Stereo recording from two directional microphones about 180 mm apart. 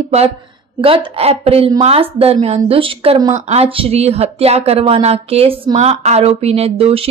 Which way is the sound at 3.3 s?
40° right (ahead or behind).